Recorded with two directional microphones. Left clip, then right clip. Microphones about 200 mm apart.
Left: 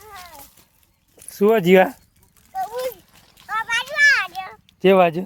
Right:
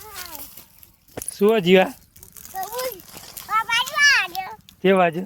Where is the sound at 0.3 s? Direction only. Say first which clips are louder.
Right 2 dB; 15° right (ahead or behind).